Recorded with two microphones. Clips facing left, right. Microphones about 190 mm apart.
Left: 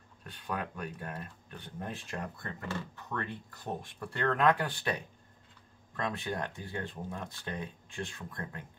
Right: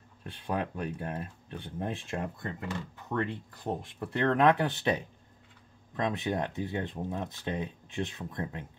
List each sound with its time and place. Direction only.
0.2 s speech: 25° right (ahead or behind)